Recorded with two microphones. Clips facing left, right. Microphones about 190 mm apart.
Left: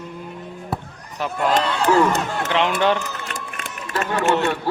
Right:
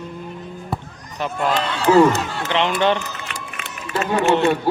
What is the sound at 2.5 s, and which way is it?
Speech, 5° left (ahead or behind).